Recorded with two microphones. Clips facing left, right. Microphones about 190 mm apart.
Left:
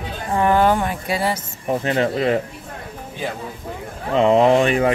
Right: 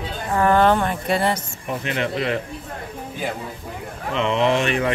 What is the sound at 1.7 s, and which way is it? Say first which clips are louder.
Speech: left 5 dB; 35° left (ahead or behind).